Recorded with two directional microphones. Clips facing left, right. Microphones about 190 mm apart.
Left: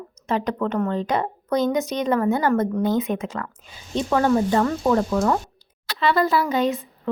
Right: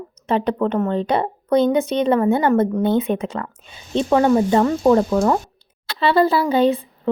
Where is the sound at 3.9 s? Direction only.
20° right (ahead or behind).